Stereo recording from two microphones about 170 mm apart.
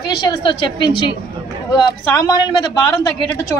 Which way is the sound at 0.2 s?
25° left (ahead or behind).